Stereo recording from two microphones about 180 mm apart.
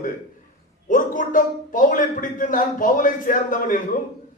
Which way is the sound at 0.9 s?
50° left (ahead or behind).